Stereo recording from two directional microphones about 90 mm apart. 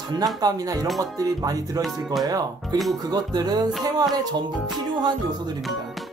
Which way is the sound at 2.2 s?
45° right (ahead or behind).